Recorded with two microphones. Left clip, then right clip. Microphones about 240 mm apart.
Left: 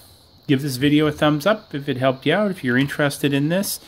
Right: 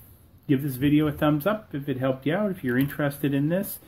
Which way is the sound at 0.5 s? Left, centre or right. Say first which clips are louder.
Left 5 dB; left.